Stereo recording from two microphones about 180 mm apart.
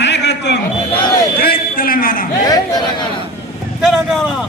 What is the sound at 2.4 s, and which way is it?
Speech, 20° left (ahead or behind).